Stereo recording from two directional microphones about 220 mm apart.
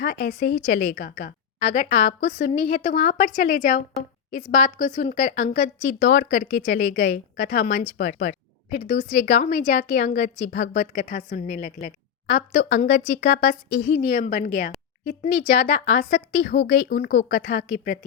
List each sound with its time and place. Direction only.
0.0 s a woman's voice: 45° left (ahead or behind)